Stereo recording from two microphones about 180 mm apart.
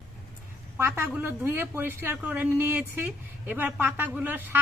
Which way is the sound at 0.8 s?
10° right (ahead or behind).